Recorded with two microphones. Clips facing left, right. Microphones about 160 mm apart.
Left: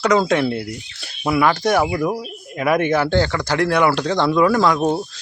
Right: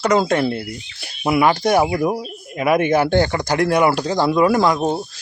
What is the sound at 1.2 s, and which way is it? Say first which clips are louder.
Speech: right 1 dB; 15° right (ahead or behind).